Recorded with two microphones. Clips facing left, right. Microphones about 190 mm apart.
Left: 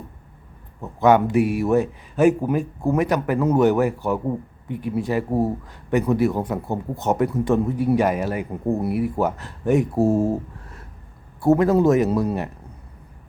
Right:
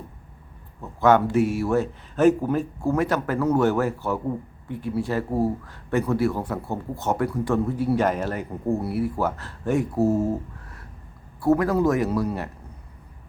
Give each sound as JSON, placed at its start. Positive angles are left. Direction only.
{"t": 0.8, "sound": "a man's voice", "side_deg": 15}